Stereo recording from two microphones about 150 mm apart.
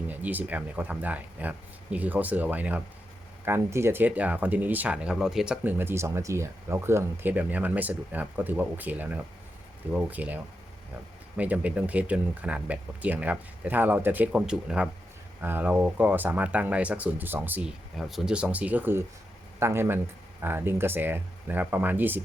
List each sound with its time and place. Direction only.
0.1 s speech: 10° right (ahead or behind)